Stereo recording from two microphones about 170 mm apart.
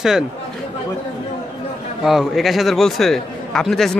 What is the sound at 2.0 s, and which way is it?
A man's voice, centre (ahead or behind).